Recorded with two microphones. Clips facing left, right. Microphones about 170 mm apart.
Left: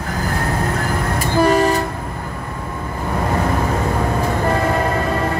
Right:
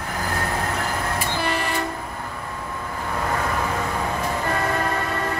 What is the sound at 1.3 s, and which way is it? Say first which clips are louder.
Train: left 15 dB; 45° left (ahead or behind).